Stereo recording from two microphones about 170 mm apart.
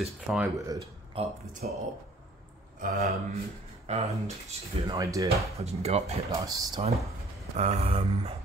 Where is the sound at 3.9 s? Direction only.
40° right (ahead or behind).